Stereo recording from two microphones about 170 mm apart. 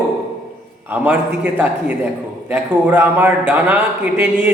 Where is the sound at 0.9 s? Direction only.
10° right (ahead or behind).